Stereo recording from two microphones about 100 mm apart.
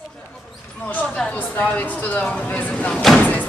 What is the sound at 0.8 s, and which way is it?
Speech, 10° left (ahead or behind).